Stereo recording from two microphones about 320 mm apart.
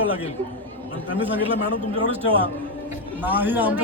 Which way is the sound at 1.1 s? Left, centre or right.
Centre.